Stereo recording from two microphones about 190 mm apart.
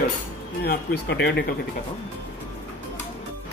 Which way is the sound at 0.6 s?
60° left (ahead or behind).